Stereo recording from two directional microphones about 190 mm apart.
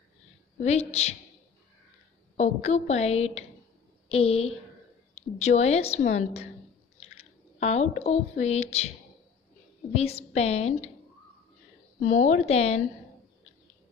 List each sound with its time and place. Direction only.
0.7 s speech: 35° left (ahead or behind)
2.3 s a woman's voice: 35° left (ahead or behind)
7.6 s speech: 35° left (ahead or behind)
9.9 s speech: 35° left (ahead or behind)
12.0 s speech: 40° left (ahead or behind)